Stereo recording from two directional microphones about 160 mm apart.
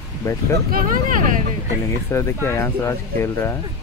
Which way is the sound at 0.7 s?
60° right (ahead or behind).